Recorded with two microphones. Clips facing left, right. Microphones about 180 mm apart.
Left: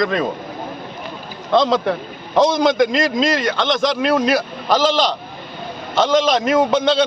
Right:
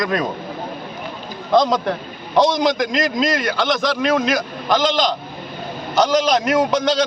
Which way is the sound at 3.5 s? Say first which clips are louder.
Left 1 dB; centre (ahead or behind).